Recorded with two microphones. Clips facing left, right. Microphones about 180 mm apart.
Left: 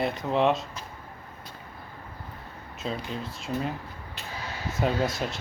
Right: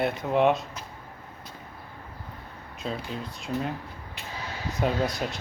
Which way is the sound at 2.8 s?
Centre (ahead or behind).